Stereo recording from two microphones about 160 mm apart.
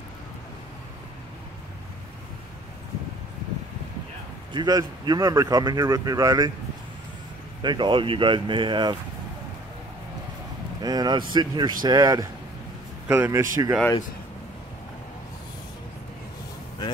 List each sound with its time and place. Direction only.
4.5 s speech: 25° right (ahead or behind)
7.6 s speech: 30° right (ahead or behind)
10.8 s a man's voice: 25° right (ahead or behind)